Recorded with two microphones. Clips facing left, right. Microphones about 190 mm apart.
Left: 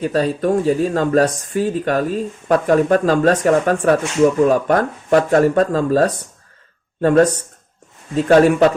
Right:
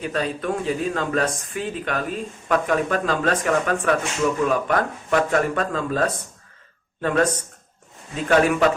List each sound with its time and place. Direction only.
0.0 s speech: 35° left (ahead or behind)